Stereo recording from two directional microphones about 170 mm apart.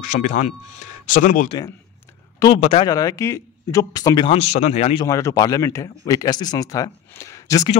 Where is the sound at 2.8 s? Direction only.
20° left (ahead or behind); by 5.0 s 35° left (ahead or behind).